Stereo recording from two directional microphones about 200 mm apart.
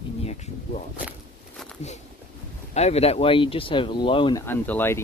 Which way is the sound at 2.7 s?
30° left (ahead or behind).